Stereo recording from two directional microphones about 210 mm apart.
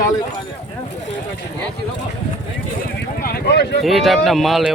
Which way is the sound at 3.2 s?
45° left (ahead or behind).